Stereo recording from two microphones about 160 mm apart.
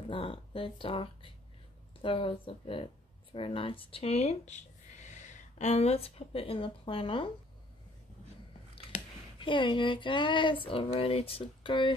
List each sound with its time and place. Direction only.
0.1 s speech: 35° left (ahead or behind)
8.7 s a sound: 30° left (ahead or behind)
10.7 s speech: 35° left (ahead or behind)